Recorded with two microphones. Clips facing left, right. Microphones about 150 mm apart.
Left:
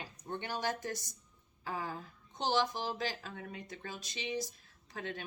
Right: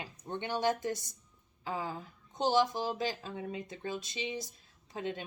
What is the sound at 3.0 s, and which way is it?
Speech, 20° right (ahead or behind).